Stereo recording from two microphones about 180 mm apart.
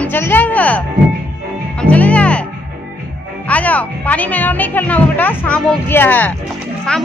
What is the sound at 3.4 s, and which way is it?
Speech, 10° left (ahead or behind).